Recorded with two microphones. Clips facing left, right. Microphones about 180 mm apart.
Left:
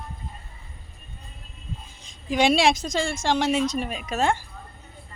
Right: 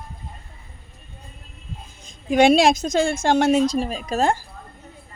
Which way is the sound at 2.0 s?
55° right (ahead or behind).